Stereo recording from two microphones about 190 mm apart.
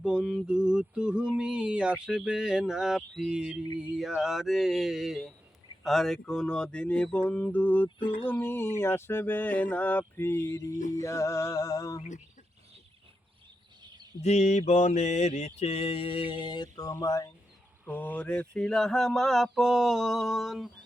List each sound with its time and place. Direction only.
0.0 s mantra: 5° right (ahead or behind); by 12.0 s 20° left (ahead or behind)
13.8 s a sound: 20° right (ahead or behind)
14.2 s mantra: 35° left (ahead or behind); by 20.7 s centre (ahead or behind)